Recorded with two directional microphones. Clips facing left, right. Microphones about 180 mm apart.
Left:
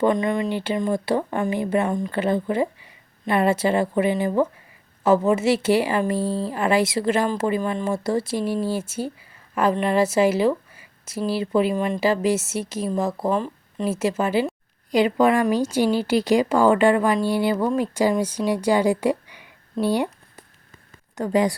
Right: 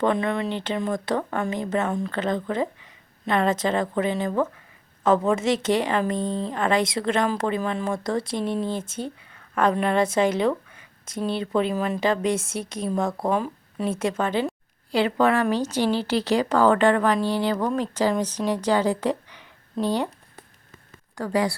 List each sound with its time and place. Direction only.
0.5 s a woman's voice: 10° left (ahead or behind)
13.8 s a woman's voice: 5° left (ahead or behind)
21.2 s speech: 20° left (ahead or behind)